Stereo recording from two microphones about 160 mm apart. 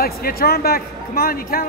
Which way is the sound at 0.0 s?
70° left (ahead or behind).